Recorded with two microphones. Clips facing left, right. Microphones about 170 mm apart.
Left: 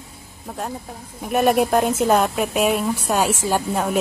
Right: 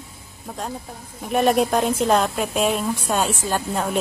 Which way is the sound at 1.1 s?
5° left (ahead or behind).